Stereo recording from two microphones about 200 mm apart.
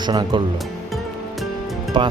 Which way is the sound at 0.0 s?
20° right (ahead or behind).